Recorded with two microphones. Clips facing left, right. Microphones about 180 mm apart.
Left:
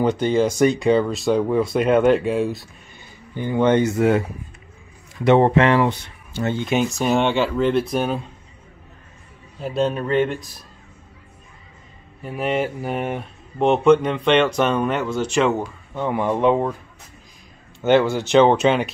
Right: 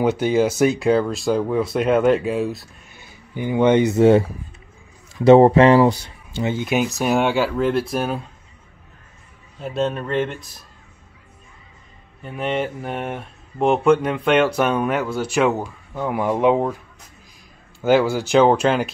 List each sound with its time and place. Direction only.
0.0 s speech: 10° right (ahead or behind); by 4.2 s 25° right (ahead or behind)
5.2 s speech: 35° right (ahead or behind)
6.3 s speech: 10° right (ahead or behind)
9.6 s speech: centre (ahead or behind)
12.2 s speech: 5° left (ahead or behind)
17.8 s speech: 5° right (ahead or behind)